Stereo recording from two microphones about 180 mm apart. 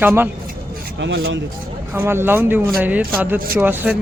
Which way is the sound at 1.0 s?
90° right.